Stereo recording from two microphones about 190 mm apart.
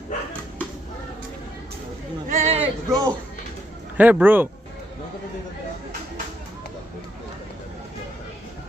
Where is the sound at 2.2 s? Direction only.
40° right (ahead or behind).